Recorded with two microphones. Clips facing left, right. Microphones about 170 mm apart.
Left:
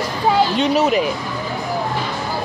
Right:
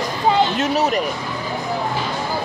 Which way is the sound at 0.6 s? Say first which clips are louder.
Left 3 dB; centre (ahead or behind).